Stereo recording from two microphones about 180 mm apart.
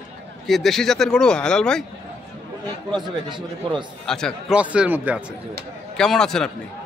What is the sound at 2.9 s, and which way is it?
Speech, 25° right (ahead or behind).